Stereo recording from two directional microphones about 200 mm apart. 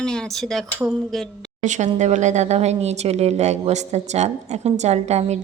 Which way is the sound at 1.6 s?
35° right (ahead or behind).